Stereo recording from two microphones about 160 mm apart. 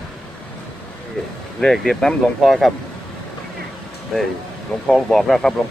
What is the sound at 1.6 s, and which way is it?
Speech, centre (ahead or behind).